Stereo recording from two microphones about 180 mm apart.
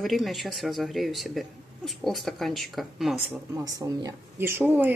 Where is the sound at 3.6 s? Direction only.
20° right (ahead or behind).